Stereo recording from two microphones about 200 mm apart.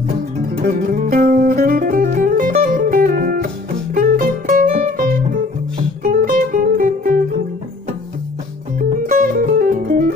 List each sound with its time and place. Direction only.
0.6 s music: 45° right (ahead or behind)
6.0 s guitar: 40° right (ahead or behind)
8.7 s music: 45° right (ahead or behind)